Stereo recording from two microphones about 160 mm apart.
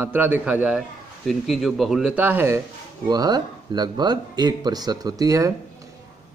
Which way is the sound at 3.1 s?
25° right (ahead or behind).